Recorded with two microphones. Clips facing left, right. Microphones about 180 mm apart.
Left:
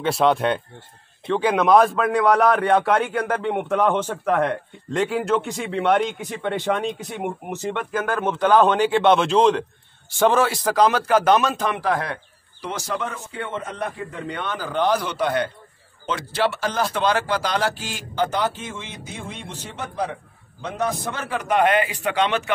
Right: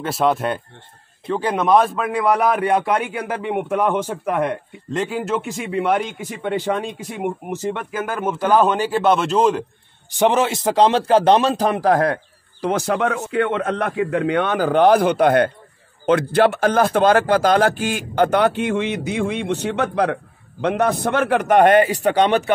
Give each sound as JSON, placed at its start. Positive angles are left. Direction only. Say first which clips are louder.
{"t": 0.0, "sound": "a man's voice", "louder": "even", "side_deg": -5}
{"t": 10.1, "sound": "a man's voice", "louder": "right 1 dB", "side_deg": -20}
{"t": 12.6, "sound": "a man's voice", "louder": "right 8 dB", "side_deg": -60}